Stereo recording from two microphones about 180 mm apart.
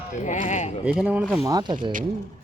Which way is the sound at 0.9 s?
10° right (ahead or behind).